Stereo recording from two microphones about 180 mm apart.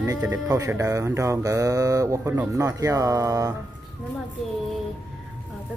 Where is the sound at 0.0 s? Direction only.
20° right (ahead or behind).